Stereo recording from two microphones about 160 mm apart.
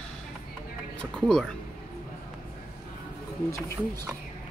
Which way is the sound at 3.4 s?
20° left (ahead or behind).